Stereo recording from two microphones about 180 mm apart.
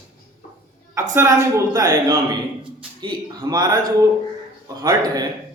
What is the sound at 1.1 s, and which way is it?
Speech, 15° right (ahead or behind).